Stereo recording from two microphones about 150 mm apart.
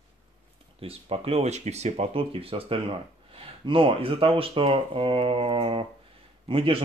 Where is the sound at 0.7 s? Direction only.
40° right (ahead or behind).